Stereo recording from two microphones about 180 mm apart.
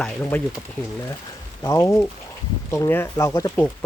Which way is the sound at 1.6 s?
15° left (ahead or behind).